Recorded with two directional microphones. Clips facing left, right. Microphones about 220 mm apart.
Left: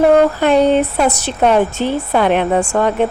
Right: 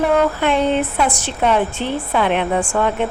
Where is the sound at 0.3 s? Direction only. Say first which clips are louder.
Left 5 dB; 40° left (ahead or behind).